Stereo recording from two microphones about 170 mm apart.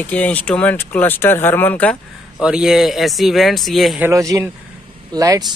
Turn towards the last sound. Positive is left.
turn(degrees=-20)  # may be behind; listen again after turning